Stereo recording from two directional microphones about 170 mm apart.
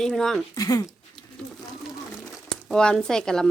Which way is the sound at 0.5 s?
20° left (ahead or behind).